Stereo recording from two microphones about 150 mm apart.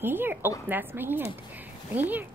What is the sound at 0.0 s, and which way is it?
Speech, 15° right (ahead or behind).